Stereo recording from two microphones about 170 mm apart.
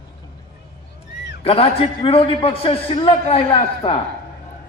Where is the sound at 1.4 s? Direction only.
35° left (ahead or behind).